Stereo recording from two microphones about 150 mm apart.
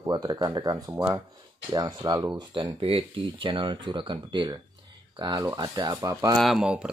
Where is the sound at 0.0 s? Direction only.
25° right (ahead or behind).